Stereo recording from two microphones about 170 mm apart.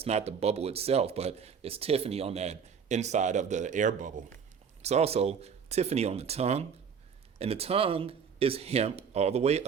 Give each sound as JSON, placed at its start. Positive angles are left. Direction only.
{"t": 0.0, "sound": "speech", "side_deg": -40}